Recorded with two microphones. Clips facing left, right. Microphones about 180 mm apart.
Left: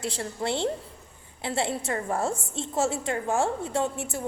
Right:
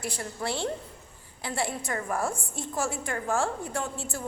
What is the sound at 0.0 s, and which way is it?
A woman's voice, 25° left (ahead or behind).